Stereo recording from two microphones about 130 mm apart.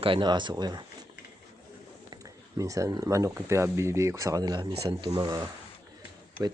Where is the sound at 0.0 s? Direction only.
40° right (ahead or behind).